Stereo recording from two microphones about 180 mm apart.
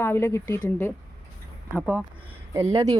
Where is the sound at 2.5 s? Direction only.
15° right (ahead or behind).